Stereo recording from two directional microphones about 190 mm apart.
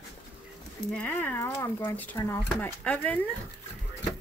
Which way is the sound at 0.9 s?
10° left (ahead or behind).